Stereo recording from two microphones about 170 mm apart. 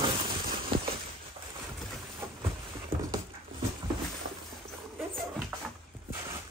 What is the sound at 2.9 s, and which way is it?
Dog, 15° right (ahead or behind).